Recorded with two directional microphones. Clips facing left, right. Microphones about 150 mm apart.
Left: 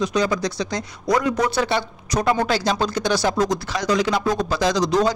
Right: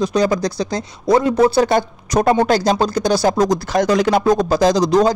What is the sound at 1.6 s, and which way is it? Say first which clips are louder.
Speech: right 6 dB; 45° right (ahead or behind).